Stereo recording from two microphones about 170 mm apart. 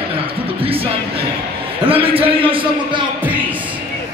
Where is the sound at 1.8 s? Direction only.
35° right (ahead or behind).